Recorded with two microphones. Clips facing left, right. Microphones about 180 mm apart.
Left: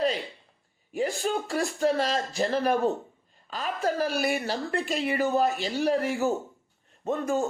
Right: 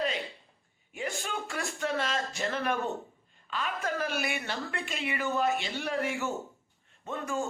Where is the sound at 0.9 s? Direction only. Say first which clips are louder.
Left 8 dB; 35° left (ahead or behind).